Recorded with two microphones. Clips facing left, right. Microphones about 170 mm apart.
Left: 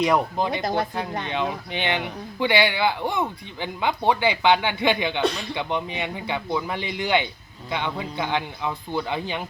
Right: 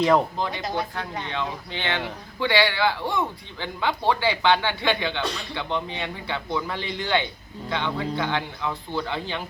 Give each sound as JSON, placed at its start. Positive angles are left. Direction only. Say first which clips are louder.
{"t": 0.0, "sound": "speech", "louder": "right 1 dB", "side_deg": 15}
{"t": 0.6, "sound": "speech", "louder": "left 4 dB", "side_deg": 50}
{"t": 1.3, "sound": "speech", "louder": "left 3 dB", "side_deg": 15}